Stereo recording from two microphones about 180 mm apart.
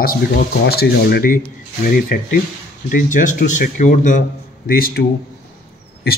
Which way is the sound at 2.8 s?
45° left (ahead or behind).